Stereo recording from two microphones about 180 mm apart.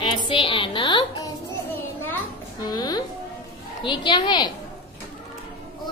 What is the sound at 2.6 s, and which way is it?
A woman's voice, 20° left (ahead or behind).